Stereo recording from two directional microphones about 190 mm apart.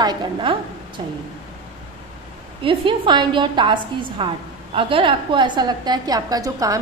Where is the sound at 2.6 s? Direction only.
25° right (ahead or behind).